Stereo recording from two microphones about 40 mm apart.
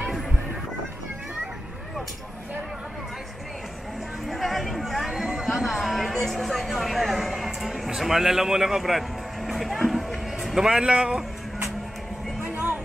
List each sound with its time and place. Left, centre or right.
4.3 s chatter: centre
6.3 s a sound: centre
10.6 s speech: centre
10.9 s music: right
12.4 s music: right